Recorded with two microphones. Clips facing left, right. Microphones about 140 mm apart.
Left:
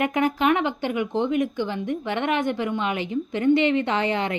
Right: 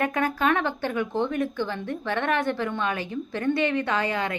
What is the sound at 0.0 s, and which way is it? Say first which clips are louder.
Speech: left 3 dB; 20° left (ahead or behind).